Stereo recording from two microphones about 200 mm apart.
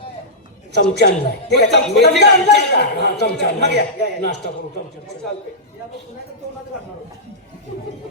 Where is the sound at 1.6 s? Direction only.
55° left (ahead or behind).